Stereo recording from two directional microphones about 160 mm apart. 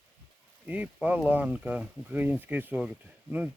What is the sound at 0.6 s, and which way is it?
Speech, 10° right (ahead or behind).